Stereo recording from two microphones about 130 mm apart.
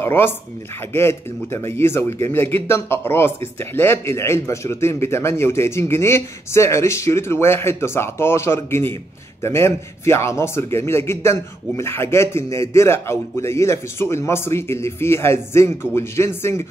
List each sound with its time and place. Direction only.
0.0 s a man's voice: 20° left (ahead or behind)